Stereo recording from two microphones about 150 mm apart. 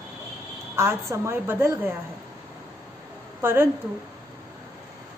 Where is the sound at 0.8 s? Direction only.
20° right (ahead or behind).